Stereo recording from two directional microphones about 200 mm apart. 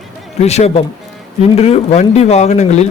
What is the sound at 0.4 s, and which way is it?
Speech, 35° left (ahead or behind).